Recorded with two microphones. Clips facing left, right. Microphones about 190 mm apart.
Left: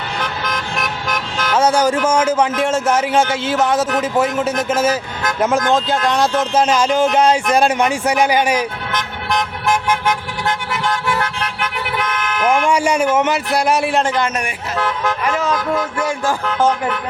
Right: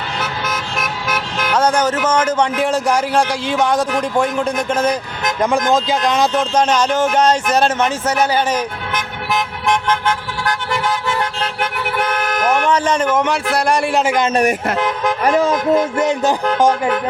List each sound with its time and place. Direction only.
0.2 s vehicle: 5° right (ahead or behind)
1.5 s a man's voice: 10° left (ahead or behind)
8.9 s car: 10° right (ahead or behind)
9.6 s vehicle: 10° left (ahead or behind)
11.1 s vehicle: 25° right (ahead or behind)
12.6 s a man's voice: 10° left (ahead or behind)
14.8 s speech: 15° right (ahead or behind)
16.6 s speech: 10° right (ahead or behind)